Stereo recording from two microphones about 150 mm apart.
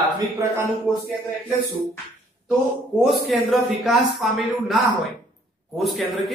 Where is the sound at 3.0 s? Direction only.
Centre (ahead or behind).